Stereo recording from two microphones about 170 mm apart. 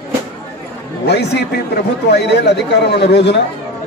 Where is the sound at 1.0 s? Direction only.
75° left (ahead or behind).